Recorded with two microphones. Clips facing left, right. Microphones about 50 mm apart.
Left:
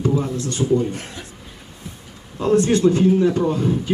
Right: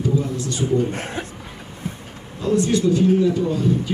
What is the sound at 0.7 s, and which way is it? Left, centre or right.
Speech, right.